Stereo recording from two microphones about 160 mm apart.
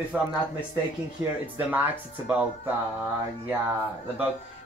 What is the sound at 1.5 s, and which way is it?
Speech, 10° right (ahead or behind).